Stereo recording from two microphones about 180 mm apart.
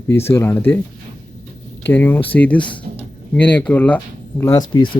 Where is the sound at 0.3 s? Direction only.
15° left (ahead or behind).